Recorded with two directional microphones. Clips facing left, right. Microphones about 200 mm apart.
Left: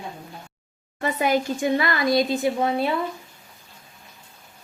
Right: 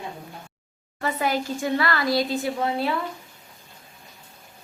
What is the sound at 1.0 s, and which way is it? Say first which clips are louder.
Speech: left 3 dB; 20° left (ahead or behind).